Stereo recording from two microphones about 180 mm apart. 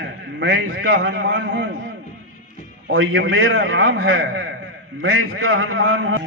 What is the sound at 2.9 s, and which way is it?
A man's voice, 90° right.